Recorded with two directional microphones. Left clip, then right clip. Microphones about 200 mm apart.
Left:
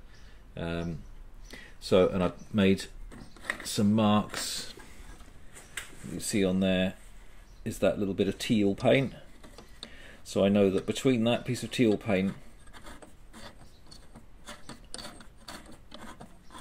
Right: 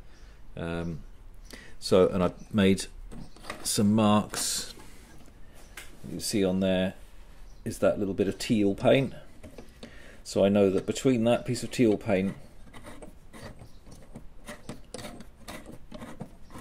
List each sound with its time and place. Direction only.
0.6 s speech: 5° right (ahead or behind)
6.2 s speech: centre (ahead or behind)